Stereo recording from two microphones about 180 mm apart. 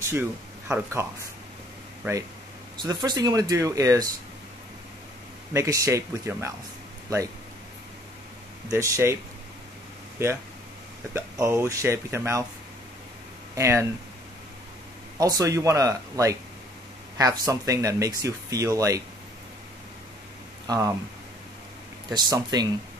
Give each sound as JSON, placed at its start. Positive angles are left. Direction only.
{"t": 0.0, "sound": "speech", "side_deg": -10}
{"t": 2.8, "sound": "speech", "side_deg": -20}
{"t": 5.5, "sound": "speech", "side_deg": -15}
{"t": 8.7, "sound": "speech", "side_deg": -15}
{"t": 13.6, "sound": "speech", "side_deg": -15}
{"t": 15.1, "sound": "speech", "side_deg": -20}
{"t": 20.6, "sound": "speech", "side_deg": -20}
{"t": 22.1, "sound": "speech", "side_deg": -20}